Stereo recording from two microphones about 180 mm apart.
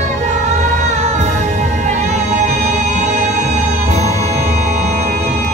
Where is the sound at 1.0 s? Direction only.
40° right (ahead or behind).